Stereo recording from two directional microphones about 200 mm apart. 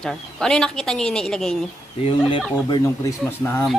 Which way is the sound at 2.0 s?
25° left (ahead or behind).